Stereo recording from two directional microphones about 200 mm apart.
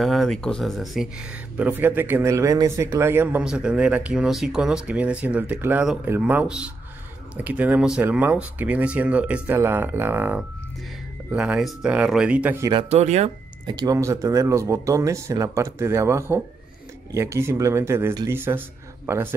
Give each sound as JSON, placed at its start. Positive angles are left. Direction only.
{"t": 0.0, "sound": "speech", "side_deg": 0}
{"t": 12.7, "sound": "speech", "side_deg": -35}
{"t": 13.7, "sound": "speech", "side_deg": -20}